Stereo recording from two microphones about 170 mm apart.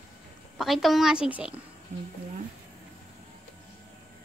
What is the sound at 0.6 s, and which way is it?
Speech, centre (ahead or behind).